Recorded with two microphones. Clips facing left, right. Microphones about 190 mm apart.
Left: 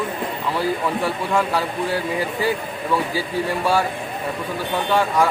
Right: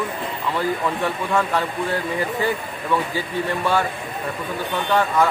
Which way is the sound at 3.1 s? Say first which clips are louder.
Left 1 dB; 10° left (ahead or behind).